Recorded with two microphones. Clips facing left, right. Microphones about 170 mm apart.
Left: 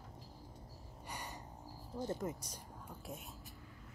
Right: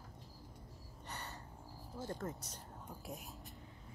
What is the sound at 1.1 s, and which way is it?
Gasp, 10° left (ahead or behind).